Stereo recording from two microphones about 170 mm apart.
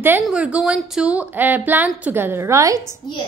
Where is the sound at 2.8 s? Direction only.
25° left (ahead or behind).